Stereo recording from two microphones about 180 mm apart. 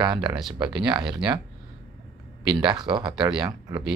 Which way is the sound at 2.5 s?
25° right (ahead or behind).